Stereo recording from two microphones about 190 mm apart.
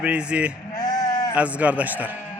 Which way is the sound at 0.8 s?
20° left (ahead or behind).